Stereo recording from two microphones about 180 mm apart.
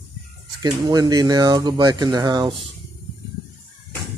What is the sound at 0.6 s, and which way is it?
Speech, 20° right (ahead or behind).